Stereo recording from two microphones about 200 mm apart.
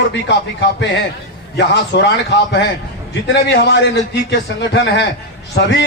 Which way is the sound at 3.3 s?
55° left (ahead or behind).